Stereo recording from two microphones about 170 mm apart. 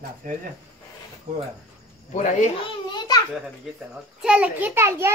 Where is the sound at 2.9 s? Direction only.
20° left (ahead or behind).